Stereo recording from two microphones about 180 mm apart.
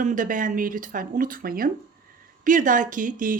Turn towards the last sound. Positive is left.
turn(degrees=-45)  # may be behind; listen again after turning